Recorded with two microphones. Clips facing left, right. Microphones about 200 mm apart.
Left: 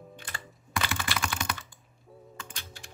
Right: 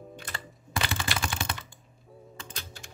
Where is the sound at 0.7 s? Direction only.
25° right (ahead or behind).